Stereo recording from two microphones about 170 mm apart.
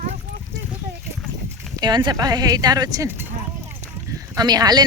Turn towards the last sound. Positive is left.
turn(degrees=-25)  # may be behind; listen again after turning